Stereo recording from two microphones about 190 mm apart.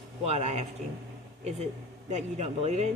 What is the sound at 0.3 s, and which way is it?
Speech, 35° right (ahead or behind).